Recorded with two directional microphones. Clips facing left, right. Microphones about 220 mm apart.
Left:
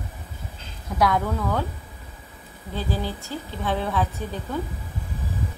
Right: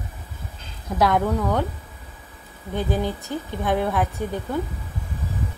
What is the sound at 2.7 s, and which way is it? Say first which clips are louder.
A woman's voice: right 4 dB; 20° right (ahead or behind).